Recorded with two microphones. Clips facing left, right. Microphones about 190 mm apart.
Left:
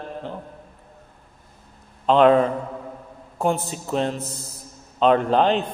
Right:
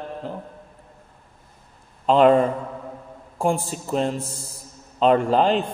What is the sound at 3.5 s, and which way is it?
A man's voice, centre (ahead or behind).